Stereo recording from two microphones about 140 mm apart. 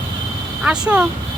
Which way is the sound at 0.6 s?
5° right (ahead or behind).